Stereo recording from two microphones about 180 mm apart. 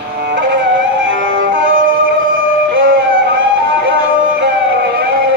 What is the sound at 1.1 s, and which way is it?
Music, 90° right.